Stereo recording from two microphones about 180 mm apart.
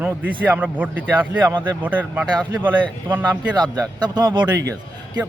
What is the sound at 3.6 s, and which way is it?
Speech, 20° right (ahead or behind).